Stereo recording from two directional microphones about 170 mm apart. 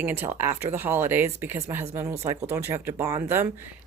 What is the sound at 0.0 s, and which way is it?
Speech, 15° right (ahead or behind).